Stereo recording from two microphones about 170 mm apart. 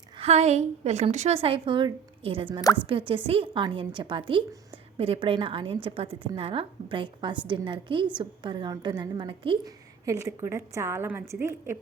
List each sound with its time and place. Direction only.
0.2 s a woman's voice: 40° right (ahead or behind)
10.1 s a woman's voice: 15° right (ahead or behind)